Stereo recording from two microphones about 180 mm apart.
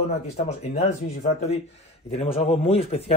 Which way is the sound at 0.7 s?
35° left (ahead or behind).